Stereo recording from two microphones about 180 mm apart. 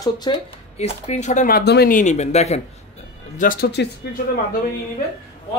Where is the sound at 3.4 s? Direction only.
50° left (ahead or behind).